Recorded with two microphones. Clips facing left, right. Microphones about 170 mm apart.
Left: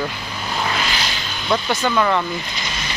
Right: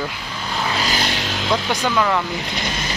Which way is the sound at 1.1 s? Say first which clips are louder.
Right 5 dB; 85° right.